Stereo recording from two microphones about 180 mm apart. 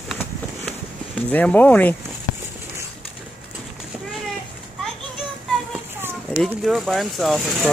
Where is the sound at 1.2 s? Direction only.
10° left (ahead or behind).